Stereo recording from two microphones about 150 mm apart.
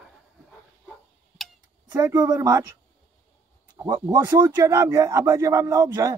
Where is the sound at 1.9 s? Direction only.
25° right (ahead or behind).